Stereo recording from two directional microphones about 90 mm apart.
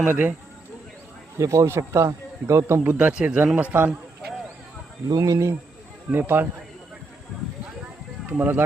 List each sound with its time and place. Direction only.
0.0 s a man's voice: 20° right (ahead or behind)
1.4 s speech: 35° right (ahead or behind)
3.1 s a man's voice: 15° right (ahead or behind)
5.0 s speech: 40° right (ahead or behind)
6.1 s a man's voice: 25° right (ahead or behind)
8.3 s a man's voice: 20° right (ahead or behind)